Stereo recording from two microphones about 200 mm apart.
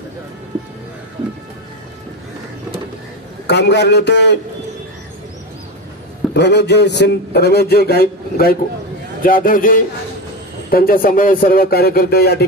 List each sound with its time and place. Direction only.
3.4 s a man's voice: 60° left (ahead or behind)
6.3 s a man's voice: 60° left (ahead or behind)